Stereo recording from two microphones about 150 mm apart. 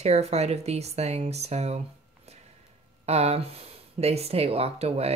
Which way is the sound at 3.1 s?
45° right (ahead or behind).